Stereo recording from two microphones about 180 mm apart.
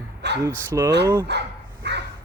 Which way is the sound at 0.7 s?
15° right (ahead or behind).